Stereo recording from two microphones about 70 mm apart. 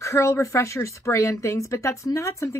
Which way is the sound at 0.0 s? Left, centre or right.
Left.